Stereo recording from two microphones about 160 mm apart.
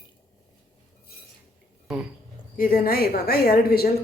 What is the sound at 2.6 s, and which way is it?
A woman's voice, 65° left (ahead or behind).